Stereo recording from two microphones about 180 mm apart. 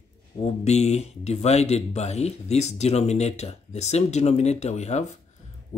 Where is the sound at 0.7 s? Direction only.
35° left (ahead or behind).